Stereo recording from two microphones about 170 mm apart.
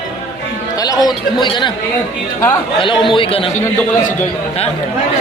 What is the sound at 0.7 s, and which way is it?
Music, 20° left (ahead or behind).